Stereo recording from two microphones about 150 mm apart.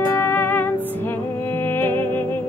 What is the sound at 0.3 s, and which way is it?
Music, 15° left (ahead or behind).